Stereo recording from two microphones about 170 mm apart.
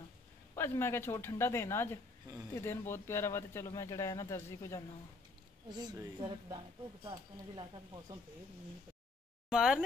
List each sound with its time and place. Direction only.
0.6 s speech: 15° left (ahead or behind)
5.8 s speech: 25° right (ahead or behind)
9.5 s speech: 5° right (ahead or behind)